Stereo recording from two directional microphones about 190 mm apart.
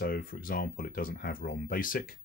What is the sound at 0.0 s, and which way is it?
Speech, 50° left (ahead or behind).